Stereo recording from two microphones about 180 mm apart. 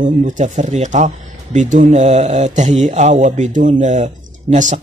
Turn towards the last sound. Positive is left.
turn(degrees=-40)  # may be behind; listen again after turning